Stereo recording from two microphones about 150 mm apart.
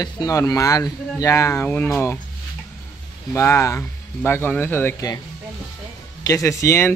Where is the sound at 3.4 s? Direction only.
20° left (ahead or behind).